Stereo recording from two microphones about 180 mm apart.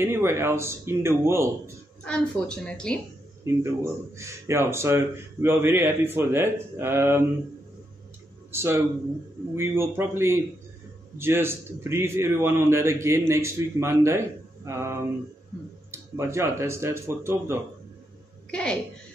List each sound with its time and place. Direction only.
0.0 s a man's voice: 15° right (ahead or behind)
2.0 s speech: 5° left (ahead or behind)
3.4 s a man's voice: 15° right (ahead or behind)
8.5 s a man's voice: 15° right (ahead or behind)
18.5 s a woman's voice: 5° left (ahead or behind)